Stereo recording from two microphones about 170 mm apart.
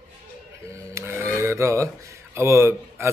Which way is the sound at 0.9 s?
15° right (ahead or behind).